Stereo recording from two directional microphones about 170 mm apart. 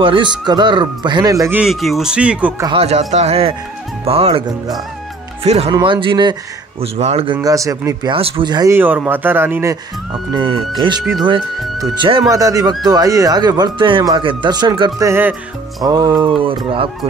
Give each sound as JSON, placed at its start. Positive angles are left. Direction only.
{"t": 0.0, "sound": "speech", "side_deg": -30}
{"t": 1.6, "sound": "speech", "side_deg": 0}
{"t": 2.6, "sound": "speech", "side_deg": -35}
{"t": 5.4, "sound": "speech", "side_deg": -40}
{"t": 7.4, "sound": "speech", "side_deg": -20}
{"t": 8.1, "sound": "speech", "side_deg": -30}
{"t": 8.7, "sound": "speech", "side_deg": -10}
{"t": 10.3, "sound": "speech", "side_deg": -30}